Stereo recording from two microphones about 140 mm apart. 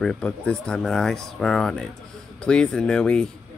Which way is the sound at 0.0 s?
5° left (ahead or behind).